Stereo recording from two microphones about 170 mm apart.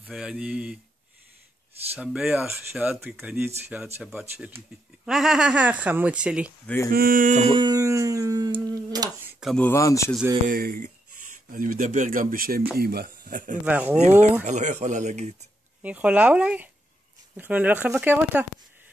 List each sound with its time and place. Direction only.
0.1 s speech: 5° right (ahead or behind)
2.0 s speech: 5° right (ahead or behind)
6.9 s speech: 60° right (ahead or behind); by 7.5 s 45° right (ahead or behind)
7.5 s music: 25° right (ahead or behind)
8.6 s humming: 20° right (ahead or behind)
9.4 s speech: centre (ahead or behind)
9.7 s speech: 15° left (ahead or behind)
10.5 s speech: 55° right (ahead or behind)
13.7 s speech: 10° right (ahead or behind)
14.4 s speech: 45° right (ahead or behind)
15.8 s speech: 10° right (ahead or behind)